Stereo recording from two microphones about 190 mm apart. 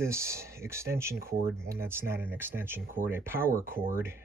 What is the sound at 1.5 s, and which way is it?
Speech, 15° right (ahead or behind).